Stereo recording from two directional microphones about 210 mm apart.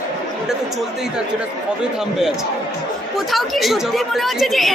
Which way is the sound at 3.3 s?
Centre (ahead or behind).